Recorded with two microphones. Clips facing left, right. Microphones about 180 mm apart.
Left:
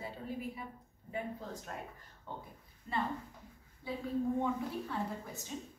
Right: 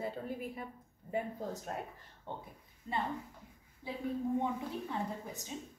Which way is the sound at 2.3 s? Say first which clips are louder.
Right 2 dB; 25° right (ahead or behind).